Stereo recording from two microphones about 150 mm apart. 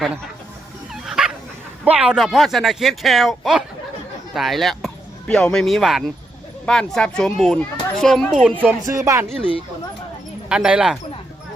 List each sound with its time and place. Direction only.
1.0 s dog: 5° right (ahead or behind)
1.8 s a child's voice: 10° right (ahead or behind)
8.8 s speech: 20° right (ahead or behind)
10.5 s a child's voice: 5° right (ahead or behind)